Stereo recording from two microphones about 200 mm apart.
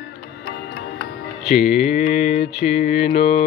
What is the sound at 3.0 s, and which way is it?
Mantra, 30° left (ahead or behind).